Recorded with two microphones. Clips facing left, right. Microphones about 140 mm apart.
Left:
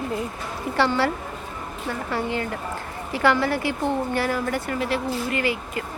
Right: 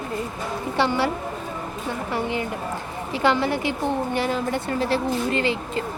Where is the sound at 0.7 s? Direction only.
15° right (ahead or behind).